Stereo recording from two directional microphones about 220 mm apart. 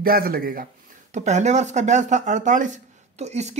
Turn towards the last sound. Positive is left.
turn(degrees=-30)  # may be behind; listen again after turning